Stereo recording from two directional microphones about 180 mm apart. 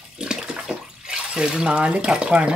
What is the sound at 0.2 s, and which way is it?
Bathtub, 5° right (ahead or behind).